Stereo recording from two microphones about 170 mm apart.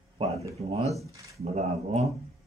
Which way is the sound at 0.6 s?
35° right (ahead or behind).